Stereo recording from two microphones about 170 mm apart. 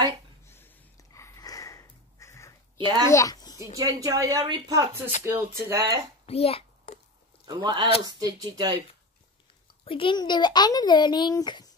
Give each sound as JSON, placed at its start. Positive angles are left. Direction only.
{"t": 0.5, "sound": "sniff", "side_deg": 15}
{"t": 2.8, "sound": "speech", "side_deg": -25}
{"t": 3.1, "sound": "speech", "side_deg": 20}
{"t": 3.5, "sound": "speech", "side_deg": -20}
{"t": 6.2, "sound": "a child's voice", "side_deg": 35}
{"t": 7.4, "sound": "speech", "side_deg": -25}
{"t": 9.8, "sound": "speech", "side_deg": 30}